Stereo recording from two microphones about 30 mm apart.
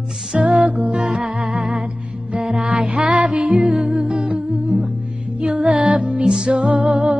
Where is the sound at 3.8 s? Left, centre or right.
Right.